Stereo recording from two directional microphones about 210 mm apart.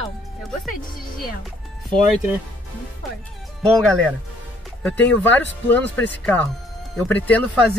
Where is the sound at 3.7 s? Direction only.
5° left (ahead or behind).